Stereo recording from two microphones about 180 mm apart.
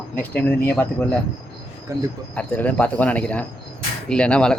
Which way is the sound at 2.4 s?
5° left (ahead or behind).